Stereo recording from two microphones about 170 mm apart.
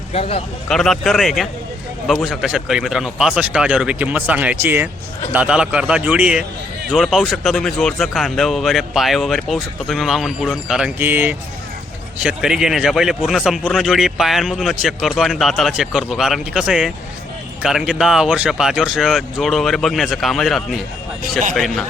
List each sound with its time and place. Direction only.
0.1 s speech: 35° left (ahead or behind)
0.7 s a man's voice: centre (ahead or behind)